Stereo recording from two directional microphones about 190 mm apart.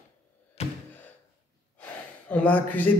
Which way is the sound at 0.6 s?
35° left (ahead or behind).